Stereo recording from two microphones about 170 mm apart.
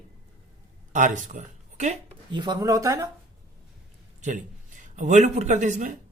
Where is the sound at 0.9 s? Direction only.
50° right (ahead or behind).